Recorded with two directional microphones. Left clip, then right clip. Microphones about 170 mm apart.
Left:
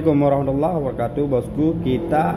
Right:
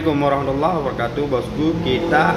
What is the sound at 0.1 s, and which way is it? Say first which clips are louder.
Speech: left 1 dB; 40° left (ahead or behind).